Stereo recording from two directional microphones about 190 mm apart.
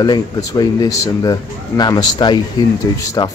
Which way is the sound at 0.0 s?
20° left (ahead or behind).